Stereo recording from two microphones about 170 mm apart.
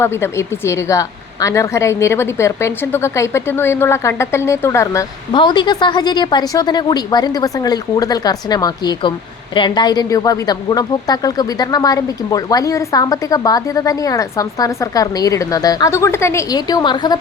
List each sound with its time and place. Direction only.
0.0 s a woman's voice: 15° left (ahead or behind)
5.3 s speech: 25° left (ahead or behind)